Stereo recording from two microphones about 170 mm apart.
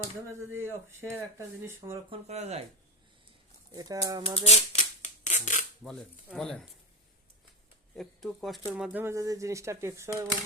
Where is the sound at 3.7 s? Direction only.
20° right (ahead or behind).